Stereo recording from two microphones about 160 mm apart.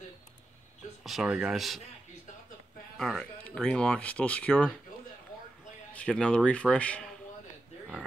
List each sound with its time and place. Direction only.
1.0 s speech: 5° right (ahead or behind)
3.0 s speech: 5° left (ahead or behind)
5.9 s speech: 5° left (ahead or behind)